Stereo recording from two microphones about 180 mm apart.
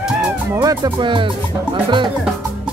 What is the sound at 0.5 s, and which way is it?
Speech, 20° right (ahead or behind).